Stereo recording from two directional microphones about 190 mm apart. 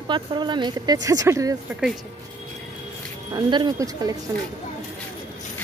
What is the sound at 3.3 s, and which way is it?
Speech, 20° right (ahead or behind).